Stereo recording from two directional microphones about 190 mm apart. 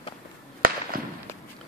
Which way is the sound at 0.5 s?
50° right (ahead or behind).